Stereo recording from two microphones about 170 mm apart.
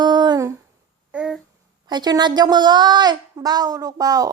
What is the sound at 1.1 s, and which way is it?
Babbling, 5° right (ahead or behind).